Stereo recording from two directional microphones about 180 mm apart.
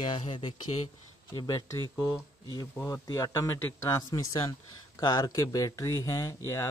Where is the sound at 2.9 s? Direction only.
20° left (ahead or behind).